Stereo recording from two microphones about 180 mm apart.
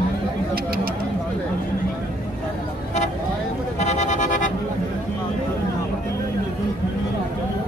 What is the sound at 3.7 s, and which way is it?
Vehicle, 40° left (ahead or behind).